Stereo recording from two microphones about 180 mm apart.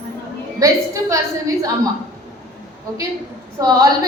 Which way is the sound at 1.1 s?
20° right (ahead or behind).